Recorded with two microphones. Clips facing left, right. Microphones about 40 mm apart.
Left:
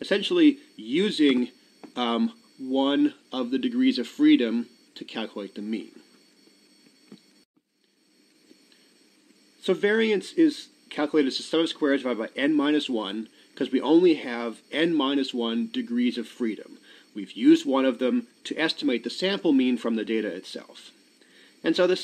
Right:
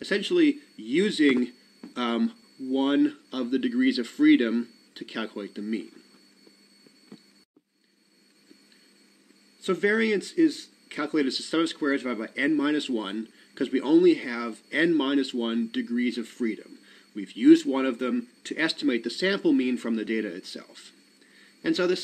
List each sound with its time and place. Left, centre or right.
0.0 s speech: left
0.9 s speech: centre
9.8 s speech: left
11.1 s speech: left
11.8 s speech: left; by 13.8 s centre
13.8 s speech: left
14.8 s speech: centre
16.1 s speech: left
17.1 s speech: centre
17.6 s speech: left
19.4 s speech: left
21.4 s a sound: left